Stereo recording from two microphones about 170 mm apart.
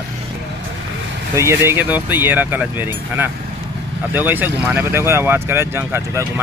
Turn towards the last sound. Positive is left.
turn(degrees=-15)  # may be behind; listen again after turning